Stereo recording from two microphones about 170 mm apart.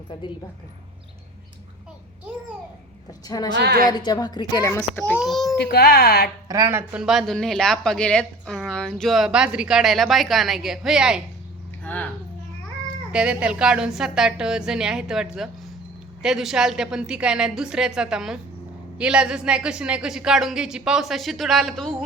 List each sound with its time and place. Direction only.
3.2 s a woman's voice: 25° left (ahead or behind)
3.5 s a woman's voice: 75° right (ahead or behind)
3.8 s a woman's voice: 25° left (ahead or behind)
4.8 s speech: centre (ahead or behind)
5.5 s speech: 65° left (ahead or behind)
6.5 s a woman's voice: 15° right (ahead or behind)
7.0 s speech: centre (ahead or behind)
11.8 s a sound: 10° left (ahead or behind)
13.1 s speech: 5° right (ahead or behind)